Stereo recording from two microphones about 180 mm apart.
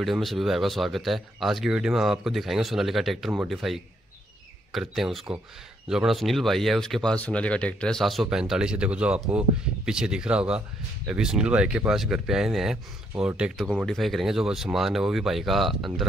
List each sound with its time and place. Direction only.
0.0 s speech: centre (ahead or behind)